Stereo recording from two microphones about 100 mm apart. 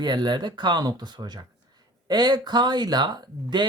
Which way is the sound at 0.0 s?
45° right (ahead or behind).